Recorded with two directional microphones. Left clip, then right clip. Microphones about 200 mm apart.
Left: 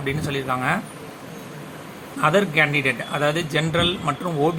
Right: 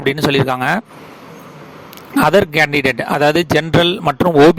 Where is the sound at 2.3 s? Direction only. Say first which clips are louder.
Right 5 dB; 60° right (ahead or behind).